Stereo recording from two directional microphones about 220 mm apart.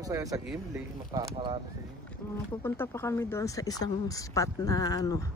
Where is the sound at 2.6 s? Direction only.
10° left (ahead or behind).